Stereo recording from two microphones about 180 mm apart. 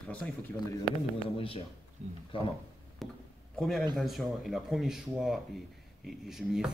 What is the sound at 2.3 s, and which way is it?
Speech, 30° left (ahead or behind).